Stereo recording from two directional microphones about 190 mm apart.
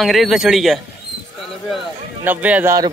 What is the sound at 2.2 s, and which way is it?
Speech, 10° right (ahead or behind).